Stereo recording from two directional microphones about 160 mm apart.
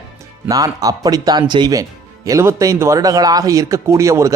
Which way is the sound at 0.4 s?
25° right (ahead or behind).